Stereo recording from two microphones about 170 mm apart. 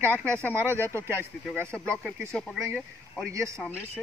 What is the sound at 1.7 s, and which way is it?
Speech, 5° left (ahead or behind).